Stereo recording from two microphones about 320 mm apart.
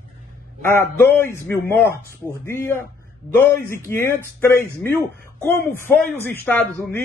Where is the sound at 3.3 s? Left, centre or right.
Centre.